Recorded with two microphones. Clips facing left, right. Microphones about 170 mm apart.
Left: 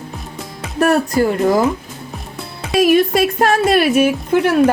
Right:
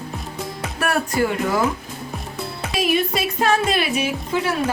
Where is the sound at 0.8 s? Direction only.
40° left (ahead or behind).